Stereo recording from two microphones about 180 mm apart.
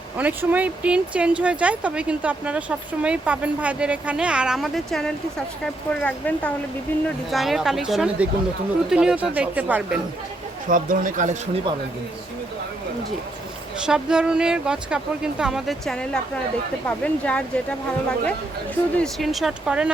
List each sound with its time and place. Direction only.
0.2 s speech: 10° right (ahead or behind)
10.7 s speech: 50° right (ahead or behind)
13.8 s speech: 5° right (ahead or behind)
18.9 s speech: centre (ahead or behind)